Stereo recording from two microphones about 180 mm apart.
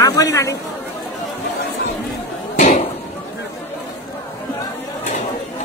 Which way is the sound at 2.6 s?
40° left (ahead or behind).